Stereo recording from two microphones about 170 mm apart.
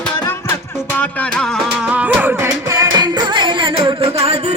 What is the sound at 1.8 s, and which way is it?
Music, 10° right (ahead or behind).